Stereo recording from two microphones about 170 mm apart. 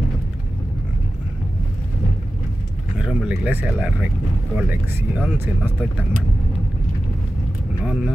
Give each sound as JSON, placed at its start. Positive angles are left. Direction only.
{"t": 3.0, "sound": "speech", "side_deg": -5}
{"t": 5.2, "sound": "speech", "side_deg": -10}
{"t": 7.8, "sound": "vehicle", "side_deg": -5}